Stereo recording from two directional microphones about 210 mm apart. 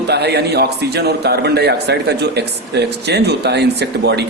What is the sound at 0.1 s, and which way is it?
A man's voice, 50° right (ahead or behind).